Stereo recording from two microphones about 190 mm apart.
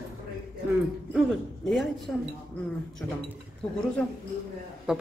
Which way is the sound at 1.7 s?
Centre (ahead or behind).